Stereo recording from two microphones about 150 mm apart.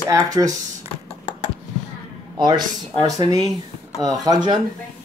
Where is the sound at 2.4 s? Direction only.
30° right (ahead or behind).